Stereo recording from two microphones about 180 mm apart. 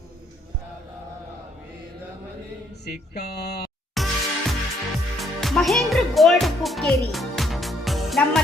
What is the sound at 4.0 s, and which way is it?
Music, centre (ahead or behind).